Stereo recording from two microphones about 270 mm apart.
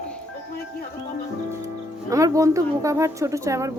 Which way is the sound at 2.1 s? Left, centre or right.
Centre.